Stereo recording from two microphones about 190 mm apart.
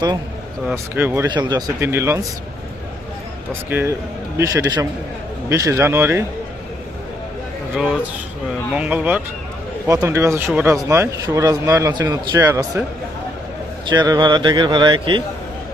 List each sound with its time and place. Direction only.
0.9 s speech: 10° right (ahead or behind)
1.3 s speech: 20° right (ahead or behind)
3.7 s speech: 10° right (ahead or behind)
7.8 s a man's voice: 5° right (ahead or behind)
13.8 s speech: 20° right (ahead or behind)